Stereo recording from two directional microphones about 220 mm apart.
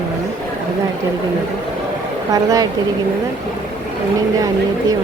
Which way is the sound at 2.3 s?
15° right (ahead or behind).